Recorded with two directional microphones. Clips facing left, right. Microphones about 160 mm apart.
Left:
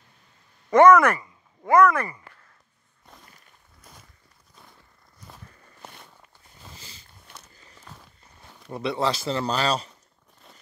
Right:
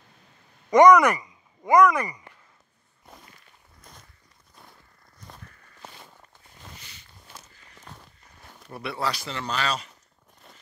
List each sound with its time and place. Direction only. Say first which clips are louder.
0.7 s speech: even; 15° right (ahead or behind)
3.9 s a sound: even; 5° left (ahead or behind)
5.2 s walk: even; 10° left (ahead or behind)
7.9 s walk: right 1 dB; centre (ahead or behind)
8.7 s speech: left 5 dB; 20° left (ahead or behind)